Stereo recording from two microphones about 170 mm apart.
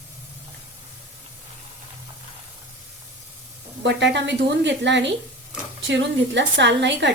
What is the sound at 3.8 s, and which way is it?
A woman's voice, 90° right.